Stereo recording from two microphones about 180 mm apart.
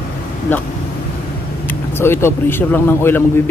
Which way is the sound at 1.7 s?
15° left (ahead or behind).